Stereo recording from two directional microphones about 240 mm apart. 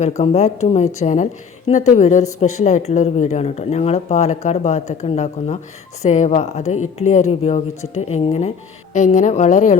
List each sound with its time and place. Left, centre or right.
0.2 s speech: left
6.7 s speech: left
7.1 s speech: left